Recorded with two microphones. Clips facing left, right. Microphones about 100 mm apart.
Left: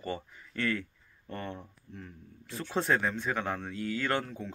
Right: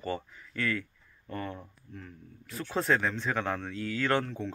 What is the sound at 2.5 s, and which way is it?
Speech, 25° left (ahead or behind).